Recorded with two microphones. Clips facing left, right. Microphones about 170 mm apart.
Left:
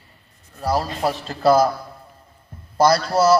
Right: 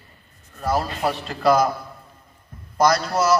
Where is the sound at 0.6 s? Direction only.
30° left (ahead or behind).